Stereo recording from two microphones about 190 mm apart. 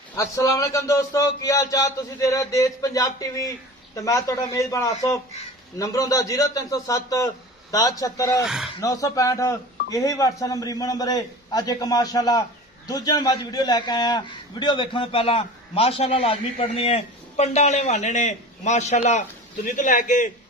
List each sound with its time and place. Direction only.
0.2 s a man's voice: 15° left (ahead or behind)
8.4 s speech: centre (ahead or behind)
8.8 s a man's voice: 20° left (ahead or behind); by 20.3 s 45° left (ahead or behind)